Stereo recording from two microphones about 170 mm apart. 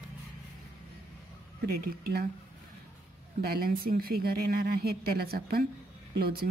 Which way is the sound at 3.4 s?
65° right (ahead or behind).